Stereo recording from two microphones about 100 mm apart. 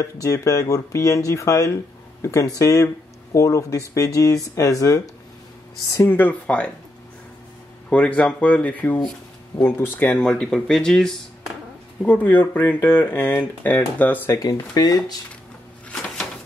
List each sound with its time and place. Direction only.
0.0 s speech: 35° left (ahead or behind)
6.0 s speech: 20° left (ahead or behind)
7.9 s speech: 10° left (ahead or behind)
10.2 s speech: 10° left (ahead or behind)
12.0 s speech: 15° left (ahead or behind)
14.4 s speech: 40° left (ahead or behind)